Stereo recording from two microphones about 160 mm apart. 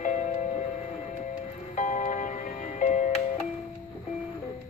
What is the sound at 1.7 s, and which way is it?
Music, 50° left (ahead or behind).